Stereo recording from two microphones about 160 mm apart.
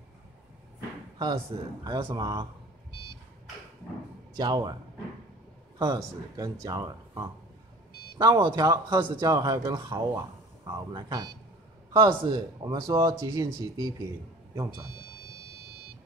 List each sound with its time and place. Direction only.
1.1 s a sound: 30° right (ahead or behind)
1.9 s speech: 25° right (ahead or behind)
4.4 s speech: 25° right (ahead or behind)
5.8 s speech: 25° right (ahead or behind)